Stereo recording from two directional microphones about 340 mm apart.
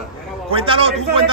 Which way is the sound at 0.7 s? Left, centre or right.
Centre.